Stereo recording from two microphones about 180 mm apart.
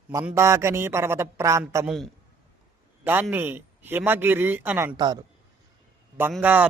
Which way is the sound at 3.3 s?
10° right (ahead or behind).